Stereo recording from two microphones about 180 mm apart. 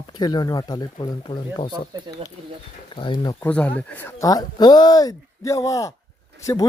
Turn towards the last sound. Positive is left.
turn(degrees=15)  # may be behind; listen again after turning